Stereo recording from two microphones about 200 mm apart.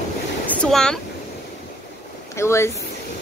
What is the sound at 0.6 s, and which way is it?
Speech, 5° left (ahead or behind).